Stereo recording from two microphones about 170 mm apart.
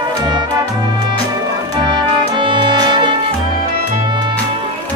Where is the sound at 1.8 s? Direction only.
30° right (ahead or behind).